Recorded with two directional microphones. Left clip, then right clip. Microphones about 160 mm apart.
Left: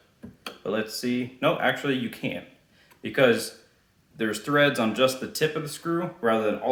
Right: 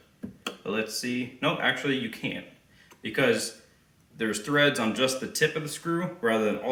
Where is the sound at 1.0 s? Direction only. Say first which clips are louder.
Left 3 dB; 30° left (ahead or behind).